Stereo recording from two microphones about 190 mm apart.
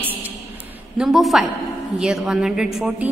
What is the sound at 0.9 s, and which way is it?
A woman's voice, centre (ahead or behind).